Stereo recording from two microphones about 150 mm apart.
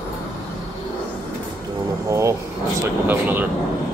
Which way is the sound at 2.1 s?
20° right (ahead or behind).